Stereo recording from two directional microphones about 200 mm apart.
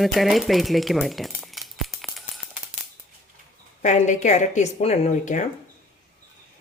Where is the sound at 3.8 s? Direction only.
35° left (ahead or behind).